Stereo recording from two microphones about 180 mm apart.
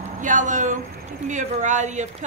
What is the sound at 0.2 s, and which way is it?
A woman's voice, 45° right (ahead or behind).